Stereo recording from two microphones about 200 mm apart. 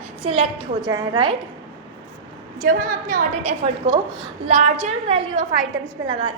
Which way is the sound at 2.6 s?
45° right (ahead or behind).